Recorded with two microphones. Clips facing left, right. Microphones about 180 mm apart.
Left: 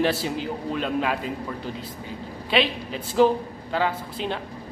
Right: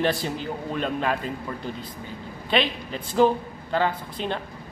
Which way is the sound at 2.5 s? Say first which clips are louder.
Left 1 dB; 5° left (ahead or behind).